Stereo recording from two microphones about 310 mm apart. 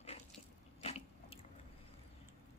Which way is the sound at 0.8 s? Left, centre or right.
Centre.